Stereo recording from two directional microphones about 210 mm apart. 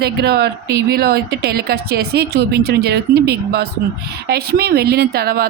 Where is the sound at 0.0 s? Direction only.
50° right (ahead or behind).